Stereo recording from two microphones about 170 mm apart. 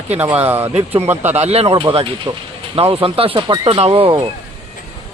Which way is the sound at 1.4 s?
40° right (ahead or behind).